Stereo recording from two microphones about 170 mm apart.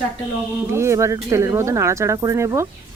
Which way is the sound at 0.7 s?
15° right (ahead or behind).